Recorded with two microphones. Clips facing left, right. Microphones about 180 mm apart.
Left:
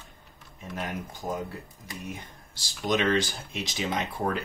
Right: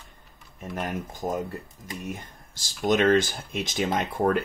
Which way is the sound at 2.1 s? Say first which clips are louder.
Right 3 dB; 50° right (ahead or behind).